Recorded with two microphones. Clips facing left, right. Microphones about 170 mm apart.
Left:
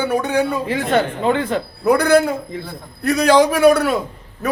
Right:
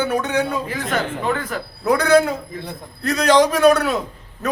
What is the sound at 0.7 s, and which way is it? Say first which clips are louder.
Speech: left 5 dB; 30° left (ahead or behind).